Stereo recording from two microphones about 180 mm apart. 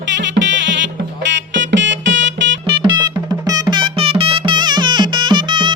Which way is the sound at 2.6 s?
25° right (ahead or behind).